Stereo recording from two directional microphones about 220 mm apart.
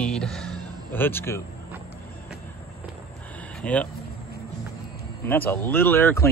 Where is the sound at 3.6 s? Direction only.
5° left (ahead or behind).